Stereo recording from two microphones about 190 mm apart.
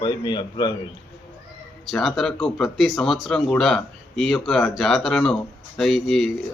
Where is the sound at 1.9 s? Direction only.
Centre (ahead or behind).